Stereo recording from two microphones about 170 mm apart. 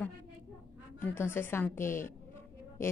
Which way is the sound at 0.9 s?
15° left (ahead or behind).